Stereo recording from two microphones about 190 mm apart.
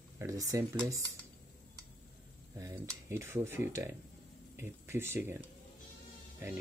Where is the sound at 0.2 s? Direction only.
20° right (ahead or behind).